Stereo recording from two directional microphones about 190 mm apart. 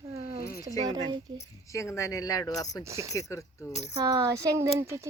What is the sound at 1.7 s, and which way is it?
Speech, 15° left (ahead or behind).